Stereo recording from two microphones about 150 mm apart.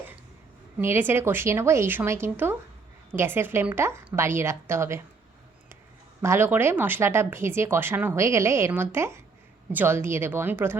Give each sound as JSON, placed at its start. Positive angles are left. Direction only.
{"t": 0.8, "sound": "speech", "side_deg": -15}
{"t": 6.2, "sound": "speech", "side_deg": -15}